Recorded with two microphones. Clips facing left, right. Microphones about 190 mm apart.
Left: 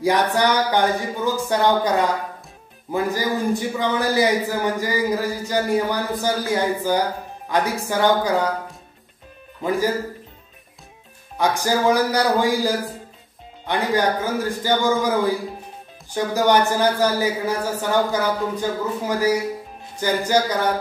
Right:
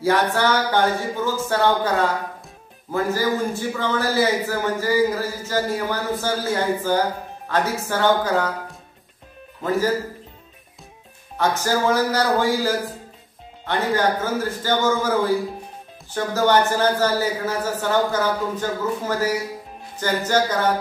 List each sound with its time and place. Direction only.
0.0 s a man's voice: 15° left (ahead or behind)
9.6 s a man's voice: 15° left (ahead or behind)
11.3 s a man's voice: 15° left (ahead or behind)
16.3 s a man's voice: 15° left (ahead or behind)